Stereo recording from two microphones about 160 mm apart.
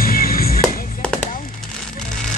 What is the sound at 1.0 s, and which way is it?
Music, 10° left (ahead or behind).